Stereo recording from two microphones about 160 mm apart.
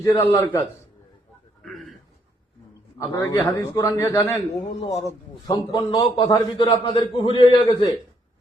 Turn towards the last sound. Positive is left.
turn(degrees=30)  # may be behind; listen again after turning